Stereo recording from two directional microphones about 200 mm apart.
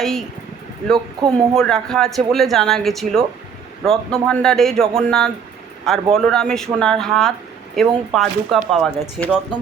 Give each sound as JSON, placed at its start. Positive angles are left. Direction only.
{"t": 0.0, "sound": "speech", "side_deg": 0}
{"t": 0.9, "sound": "speech", "side_deg": -20}
{"t": 1.5, "sound": "speech", "side_deg": 5}